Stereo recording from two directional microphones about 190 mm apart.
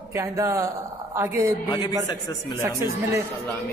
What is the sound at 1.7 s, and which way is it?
Speech, 20° left (ahead or behind).